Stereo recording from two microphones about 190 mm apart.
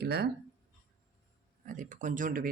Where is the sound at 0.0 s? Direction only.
60° right (ahead or behind).